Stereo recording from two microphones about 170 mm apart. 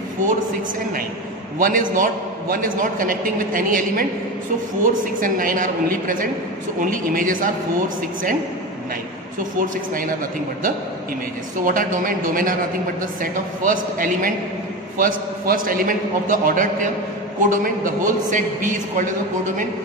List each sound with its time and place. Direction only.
1.6 s a man's voice: 50° right (ahead or behind)
9.6 s a man's voice: 55° right (ahead or behind)
11.6 s a man's voice: 50° right (ahead or behind)